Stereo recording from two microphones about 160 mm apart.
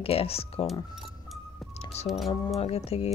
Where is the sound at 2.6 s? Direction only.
40° left (ahead or behind).